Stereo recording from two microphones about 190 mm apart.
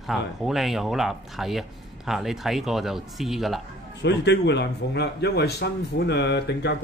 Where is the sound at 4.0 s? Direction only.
65° left (ahead or behind).